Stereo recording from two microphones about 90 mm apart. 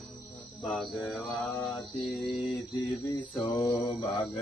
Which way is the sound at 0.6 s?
Centre (ahead or behind).